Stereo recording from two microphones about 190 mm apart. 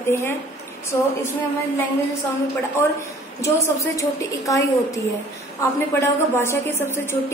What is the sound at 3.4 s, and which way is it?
A woman's voice, 15° left (ahead or behind).